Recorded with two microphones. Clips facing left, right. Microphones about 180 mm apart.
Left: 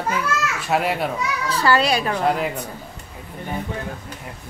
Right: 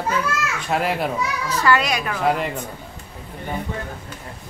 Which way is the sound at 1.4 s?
30° left (ahead or behind).